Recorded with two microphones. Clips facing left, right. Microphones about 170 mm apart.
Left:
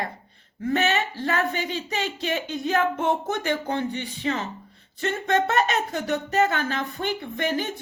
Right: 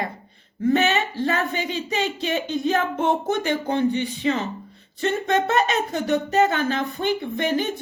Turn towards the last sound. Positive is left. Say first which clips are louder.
# right 3 dB
turn(degrees=-20)  # may be behind; listen again after turning